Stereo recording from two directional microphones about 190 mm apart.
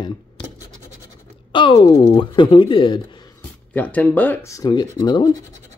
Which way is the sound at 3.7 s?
10° left (ahead or behind).